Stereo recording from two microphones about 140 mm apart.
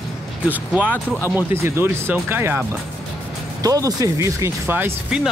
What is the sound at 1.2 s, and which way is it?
Speech, 15° right (ahead or behind).